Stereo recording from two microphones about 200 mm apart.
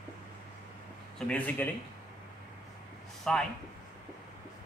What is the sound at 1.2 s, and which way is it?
Speech, 10° left (ahead or behind).